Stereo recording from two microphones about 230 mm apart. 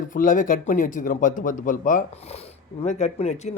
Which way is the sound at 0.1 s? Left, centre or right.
Left.